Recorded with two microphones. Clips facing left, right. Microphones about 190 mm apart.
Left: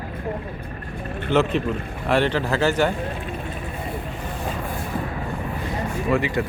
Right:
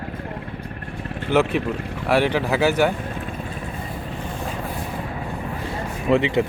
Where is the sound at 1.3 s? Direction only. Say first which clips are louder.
Right 1 dB; 10° right (ahead or behind).